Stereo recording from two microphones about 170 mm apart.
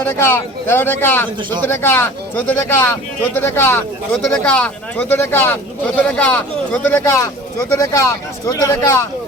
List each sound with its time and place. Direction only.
0.0 s speech: 15° left (ahead or behind)